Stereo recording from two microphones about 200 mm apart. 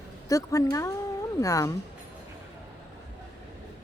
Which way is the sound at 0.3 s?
15° left (ahead or behind).